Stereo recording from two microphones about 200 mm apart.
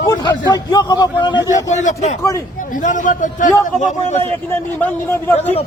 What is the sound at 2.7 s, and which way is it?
A man's voice, 40° left (ahead or behind).